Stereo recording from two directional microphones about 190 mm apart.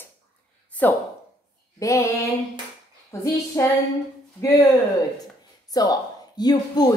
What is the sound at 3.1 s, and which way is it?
Speech, 15° left (ahead or behind).